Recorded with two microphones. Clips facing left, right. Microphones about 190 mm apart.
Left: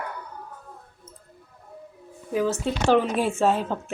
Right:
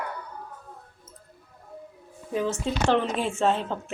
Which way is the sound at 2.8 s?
10° left (ahead or behind).